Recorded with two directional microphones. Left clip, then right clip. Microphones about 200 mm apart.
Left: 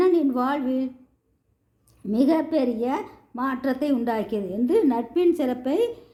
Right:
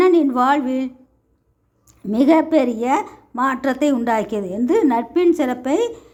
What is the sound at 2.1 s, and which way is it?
A man's voice, 20° right (ahead or behind).